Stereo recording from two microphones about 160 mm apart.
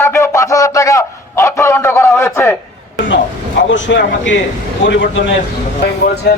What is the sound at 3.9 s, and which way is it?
A man's voice, 90° left.